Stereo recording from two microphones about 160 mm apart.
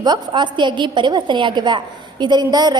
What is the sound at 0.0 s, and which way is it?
A woman's voice, 30° right (ahead or behind).